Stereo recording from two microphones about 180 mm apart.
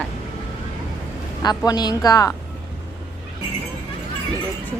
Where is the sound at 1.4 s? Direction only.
20° left (ahead or behind).